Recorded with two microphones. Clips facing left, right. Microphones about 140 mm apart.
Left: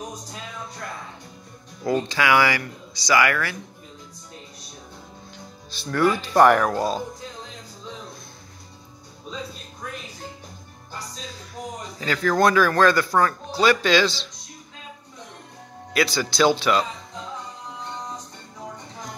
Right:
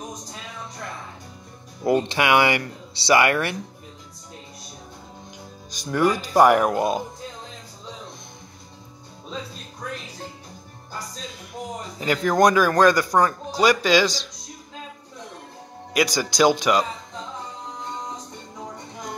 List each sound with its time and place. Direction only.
1.8 s speech: 25° right (ahead or behind)
5.7 s speech: 15° right (ahead or behind)
12.0 s speech: 15° right (ahead or behind)
15.9 s speech: 15° right (ahead or behind)